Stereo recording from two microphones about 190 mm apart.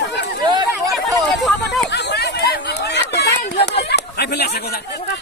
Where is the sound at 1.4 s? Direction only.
Centre (ahead or behind).